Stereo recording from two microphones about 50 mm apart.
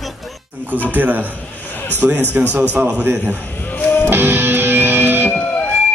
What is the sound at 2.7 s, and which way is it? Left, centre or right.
Speech, right.